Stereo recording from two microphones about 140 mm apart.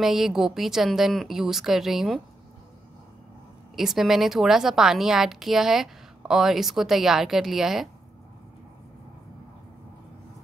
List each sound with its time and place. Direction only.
0.0 s a woman's voice: 5° right (ahead or behind)
3.7 s a woman's voice: 5° right (ahead or behind)